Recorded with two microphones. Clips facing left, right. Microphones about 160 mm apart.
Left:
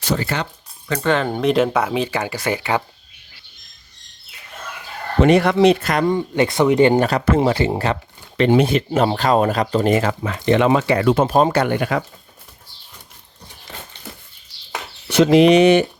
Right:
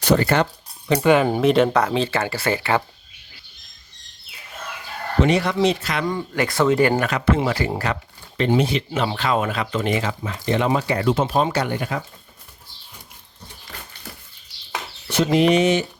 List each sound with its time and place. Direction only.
0.1 s speech: 60° right (ahead or behind)
0.9 s speech: 10° right (ahead or behind); by 2.8 s 15° left (ahead or behind)
5.2 s speech: 55° left (ahead or behind)
6.1 s speech: 25° left (ahead or behind)
7.3 s speech: 40° left (ahead or behind)
7.5 s speech: 25° left (ahead or behind)
8.4 s speech: 70° left (ahead or behind); by 11.6 s 45° left (ahead or behind)
11.6 s speech: 75° left (ahead or behind)
15.1 s speech: 90° left; by 15.9 s 60° left (ahead or behind)